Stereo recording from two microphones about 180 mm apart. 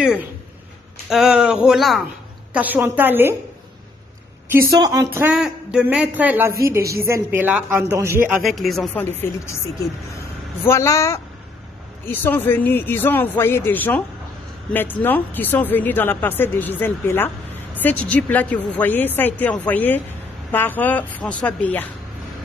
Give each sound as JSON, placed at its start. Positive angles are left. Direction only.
{"t": 1.0, "sound": "a man's voice", "side_deg": 0}
{"t": 4.6, "sound": "a man's voice", "side_deg": -20}
{"t": 8.4, "sound": "speech", "side_deg": 0}
{"t": 10.6, "sound": "speech", "side_deg": 15}